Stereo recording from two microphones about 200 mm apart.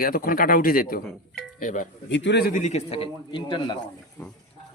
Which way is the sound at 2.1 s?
65° left (ahead or behind).